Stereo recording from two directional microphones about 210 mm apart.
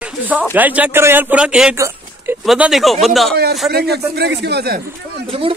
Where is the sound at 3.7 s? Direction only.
50° right (ahead or behind).